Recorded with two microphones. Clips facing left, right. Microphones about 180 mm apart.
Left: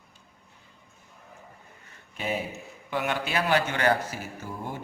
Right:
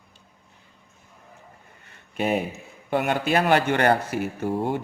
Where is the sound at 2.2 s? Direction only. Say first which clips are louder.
Right 7 dB; 60° right (ahead or behind).